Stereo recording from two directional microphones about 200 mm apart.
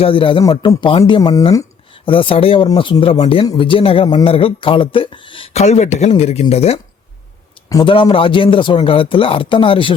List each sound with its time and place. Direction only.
0.0 s speech: 25° left (ahead or behind)